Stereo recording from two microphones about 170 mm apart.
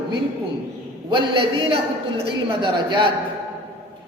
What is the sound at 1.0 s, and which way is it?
Speech, 30° right (ahead or behind).